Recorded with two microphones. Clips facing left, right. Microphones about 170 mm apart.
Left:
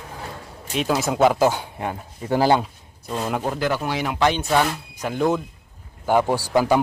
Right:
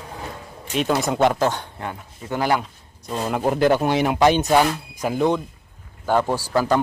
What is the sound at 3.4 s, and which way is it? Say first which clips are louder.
Speech: right 6 dB; 20° right (ahead or behind).